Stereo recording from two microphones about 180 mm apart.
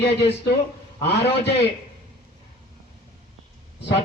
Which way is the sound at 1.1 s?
70° left (ahead or behind).